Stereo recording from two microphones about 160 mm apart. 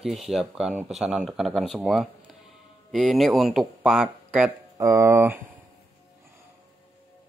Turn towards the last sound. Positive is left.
turn(degrees=-15)  # may be behind; listen again after turning